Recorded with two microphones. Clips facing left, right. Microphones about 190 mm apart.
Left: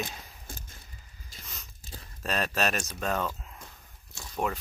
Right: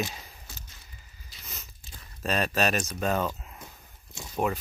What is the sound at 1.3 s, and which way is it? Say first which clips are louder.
Biting: left 3 dB; 50° left (ahead or behind).